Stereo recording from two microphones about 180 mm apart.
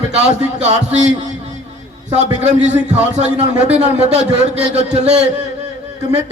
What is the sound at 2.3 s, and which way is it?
Speech, 40° right (ahead or behind).